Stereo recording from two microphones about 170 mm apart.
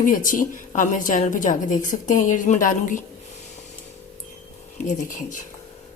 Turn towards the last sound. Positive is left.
turn(degrees=50)  # may be behind; listen again after turning